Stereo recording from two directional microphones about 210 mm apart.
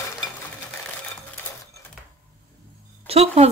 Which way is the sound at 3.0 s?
30° right (ahead or behind).